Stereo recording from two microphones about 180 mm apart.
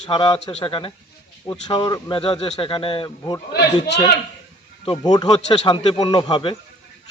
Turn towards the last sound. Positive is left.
turn(degrees=25)  # may be behind; listen again after turning